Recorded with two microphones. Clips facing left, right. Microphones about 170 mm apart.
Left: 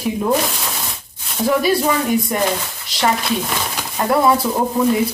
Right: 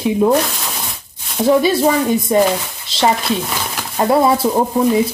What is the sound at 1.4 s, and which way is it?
Speech, 25° right (ahead or behind).